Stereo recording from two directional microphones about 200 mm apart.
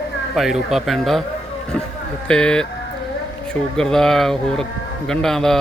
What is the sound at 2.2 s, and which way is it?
Speech, 5° left (ahead or behind).